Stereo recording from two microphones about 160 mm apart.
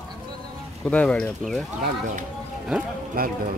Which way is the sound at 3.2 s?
65° right (ahead or behind).